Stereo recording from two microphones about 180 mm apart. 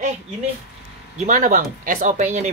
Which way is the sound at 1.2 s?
45° right (ahead or behind).